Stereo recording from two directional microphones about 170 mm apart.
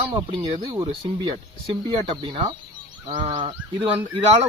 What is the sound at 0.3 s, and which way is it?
Speech, 25° right (ahead or behind).